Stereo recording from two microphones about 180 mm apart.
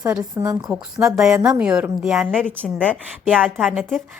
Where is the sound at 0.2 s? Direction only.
20° right (ahead or behind).